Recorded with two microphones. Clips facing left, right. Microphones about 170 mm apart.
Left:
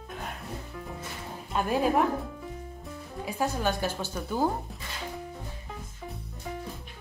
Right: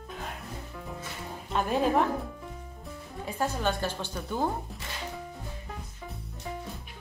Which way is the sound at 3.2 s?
5° left (ahead or behind).